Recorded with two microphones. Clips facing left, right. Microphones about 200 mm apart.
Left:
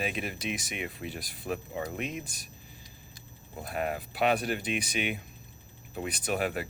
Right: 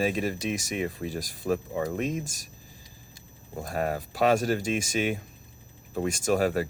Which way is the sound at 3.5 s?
45° right (ahead or behind).